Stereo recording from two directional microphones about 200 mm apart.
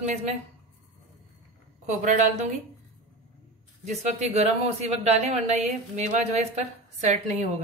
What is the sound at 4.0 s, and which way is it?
Speech, 35° right (ahead or behind).